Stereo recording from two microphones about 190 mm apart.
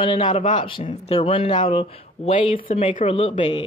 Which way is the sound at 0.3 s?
40° left (ahead or behind).